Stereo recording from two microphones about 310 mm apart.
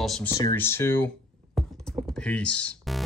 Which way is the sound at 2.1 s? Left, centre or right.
Centre.